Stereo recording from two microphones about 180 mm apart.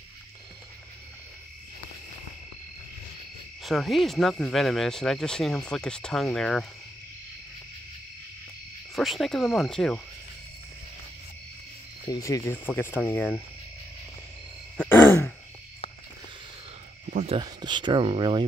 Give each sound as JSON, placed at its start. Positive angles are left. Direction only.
{"t": 3.6, "sound": "speech", "side_deg": 0}
{"t": 8.9, "sound": "speech", "side_deg": 0}
{"t": 12.1, "sound": "speech", "side_deg": 15}
{"t": 14.8, "sound": "groan", "side_deg": 10}
{"t": 17.1, "sound": "cricket", "side_deg": -40}
{"t": 17.4, "sound": "speech", "side_deg": -25}